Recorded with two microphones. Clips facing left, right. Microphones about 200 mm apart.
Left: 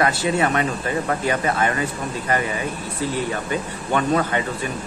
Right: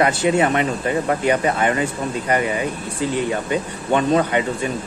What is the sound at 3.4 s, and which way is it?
Speech, 20° right (ahead or behind).